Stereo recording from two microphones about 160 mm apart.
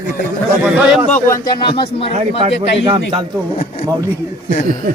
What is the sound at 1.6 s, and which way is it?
Speech, 35° left (ahead or behind).